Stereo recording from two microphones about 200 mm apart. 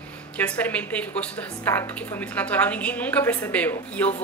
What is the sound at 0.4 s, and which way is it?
A woman's voice, 10° left (ahead or behind).